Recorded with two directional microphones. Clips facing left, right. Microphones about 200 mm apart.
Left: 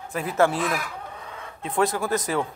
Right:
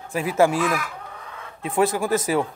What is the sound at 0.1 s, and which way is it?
Speech, 15° right (ahead or behind).